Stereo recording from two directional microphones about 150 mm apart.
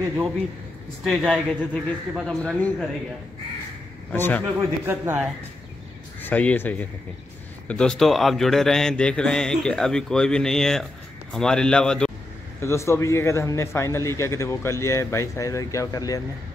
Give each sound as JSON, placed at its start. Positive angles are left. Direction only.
{"t": 1.0, "sound": "a man's voice", "side_deg": 5}
{"t": 4.1, "sound": "speech", "side_deg": 10}
{"t": 4.6, "sound": "speech", "side_deg": -15}
{"t": 6.2, "sound": "a man's voice", "side_deg": 10}
{"t": 12.5, "sound": "a man's voice", "side_deg": 20}